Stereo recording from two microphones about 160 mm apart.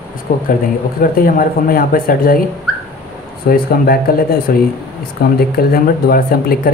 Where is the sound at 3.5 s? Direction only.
70° left (ahead or behind).